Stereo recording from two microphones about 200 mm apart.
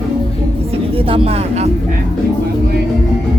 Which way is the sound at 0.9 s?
30° right (ahead or behind).